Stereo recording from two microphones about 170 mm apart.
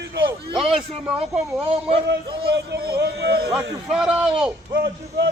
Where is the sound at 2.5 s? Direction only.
70° right (ahead or behind).